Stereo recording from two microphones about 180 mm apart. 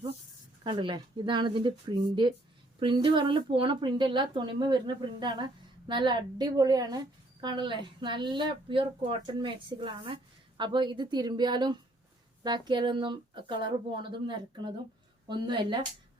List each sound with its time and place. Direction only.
0.6 s speech: 25° right (ahead or behind)